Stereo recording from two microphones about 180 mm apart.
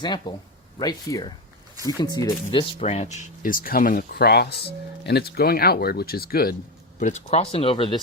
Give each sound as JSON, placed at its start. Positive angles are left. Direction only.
{"t": 0.0, "sound": "speech", "side_deg": 25}
{"t": 7.0, "sound": "speech", "side_deg": 40}